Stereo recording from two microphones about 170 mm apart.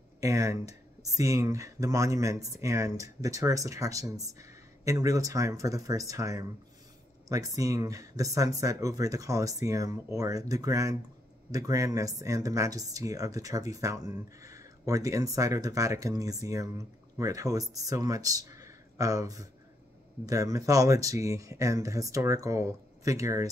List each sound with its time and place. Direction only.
0.2 s speech: 20° right (ahead or behind)